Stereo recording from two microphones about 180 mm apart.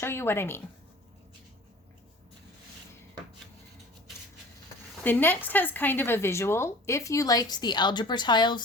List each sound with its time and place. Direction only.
0.0 s speech: 15° left (ahead or behind)
5.0 s speech: 10° left (ahead or behind)